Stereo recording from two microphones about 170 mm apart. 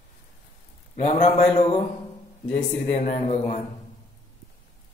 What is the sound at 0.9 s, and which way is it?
Speech, 40° left (ahead or behind).